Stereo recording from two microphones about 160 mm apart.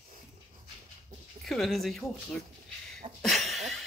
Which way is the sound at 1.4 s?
Centre (ahead or behind).